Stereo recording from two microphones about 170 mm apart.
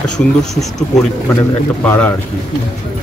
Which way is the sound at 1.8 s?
10° left (ahead or behind).